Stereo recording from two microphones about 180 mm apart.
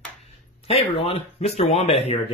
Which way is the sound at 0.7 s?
35° left (ahead or behind).